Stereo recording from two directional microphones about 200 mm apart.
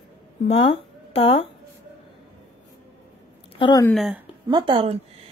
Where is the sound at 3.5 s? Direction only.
20° left (ahead or behind).